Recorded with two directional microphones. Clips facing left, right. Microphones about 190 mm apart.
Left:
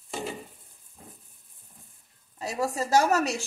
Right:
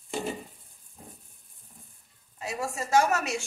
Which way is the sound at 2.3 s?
35° left (ahead or behind).